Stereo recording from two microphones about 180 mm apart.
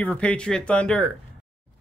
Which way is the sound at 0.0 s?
10° left (ahead or behind).